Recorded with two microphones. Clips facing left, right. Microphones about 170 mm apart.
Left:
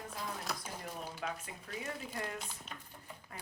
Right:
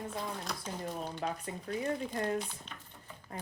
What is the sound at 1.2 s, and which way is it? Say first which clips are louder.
Speech: right 4 dB; 35° right (ahead or behind).